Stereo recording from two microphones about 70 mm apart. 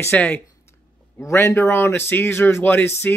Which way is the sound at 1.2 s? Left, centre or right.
Left.